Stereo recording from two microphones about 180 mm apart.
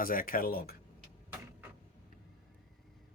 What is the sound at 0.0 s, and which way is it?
Speech, 50° left (ahead or behind).